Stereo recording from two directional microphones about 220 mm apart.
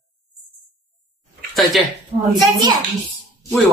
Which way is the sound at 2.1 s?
20° right (ahead or behind).